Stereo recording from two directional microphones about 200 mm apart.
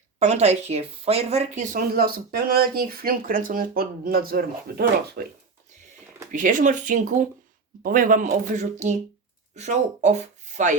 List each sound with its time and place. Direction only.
0.2 s speech: 35° right (ahead or behind); by 5.2 s 50° right (ahead or behind)
6.3 s speech: 40° right (ahead or behind)